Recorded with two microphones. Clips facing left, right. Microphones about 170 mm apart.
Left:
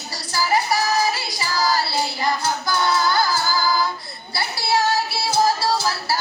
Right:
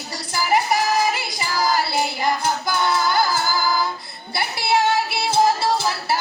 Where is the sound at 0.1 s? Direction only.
20° right (ahead or behind).